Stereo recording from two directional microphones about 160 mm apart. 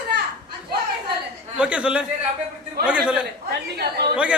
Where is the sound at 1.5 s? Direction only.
5° right (ahead or behind).